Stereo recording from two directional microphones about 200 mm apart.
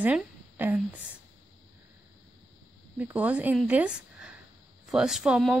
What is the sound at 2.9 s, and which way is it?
A woman's voice, 5° right (ahead or behind).